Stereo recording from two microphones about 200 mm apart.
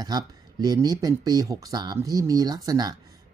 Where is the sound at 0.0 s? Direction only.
20° right (ahead or behind).